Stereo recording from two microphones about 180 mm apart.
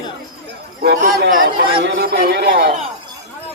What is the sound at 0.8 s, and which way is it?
Speech, 60° right (ahead or behind).